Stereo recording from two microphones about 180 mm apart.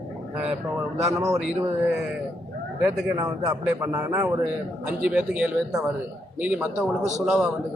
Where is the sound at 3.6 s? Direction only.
15° right (ahead or behind).